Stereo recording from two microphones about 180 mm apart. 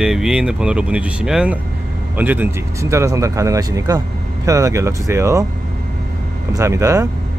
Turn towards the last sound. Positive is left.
turn(degrees=-15)  # may be behind; listen again after turning